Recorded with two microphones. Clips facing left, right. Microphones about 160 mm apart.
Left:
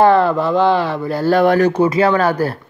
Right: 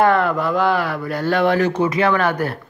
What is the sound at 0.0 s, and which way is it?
A man's voice, 30° left (ahead or behind).